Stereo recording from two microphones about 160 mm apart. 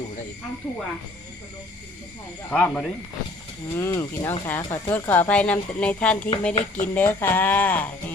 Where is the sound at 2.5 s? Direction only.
5° left (ahead or behind).